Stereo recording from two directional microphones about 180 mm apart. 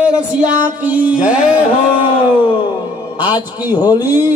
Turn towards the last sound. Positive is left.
turn(degrees=20)  # may be behind; listen again after turning